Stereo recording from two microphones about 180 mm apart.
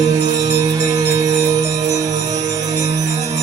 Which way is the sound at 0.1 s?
20° right (ahead or behind).